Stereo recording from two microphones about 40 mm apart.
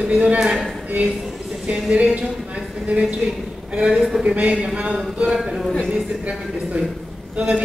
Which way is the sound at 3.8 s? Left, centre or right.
Right.